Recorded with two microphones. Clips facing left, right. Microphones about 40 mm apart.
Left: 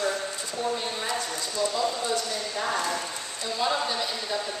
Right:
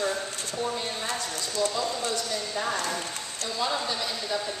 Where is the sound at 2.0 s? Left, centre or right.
Left.